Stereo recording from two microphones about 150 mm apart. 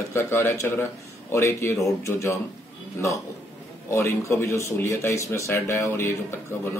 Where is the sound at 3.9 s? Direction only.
20° left (ahead or behind).